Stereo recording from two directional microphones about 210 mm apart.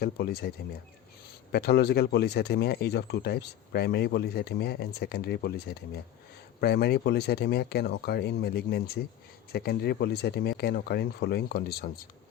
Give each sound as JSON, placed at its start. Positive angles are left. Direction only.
{"t": 0.0, "sound": "speech", "side_deg": 50}
{"t": 1.5, "sound": "speech", "side_deg": 50}